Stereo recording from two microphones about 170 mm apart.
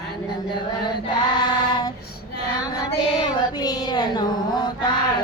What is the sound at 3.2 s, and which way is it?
Child singing, 25° left (ahead or behind).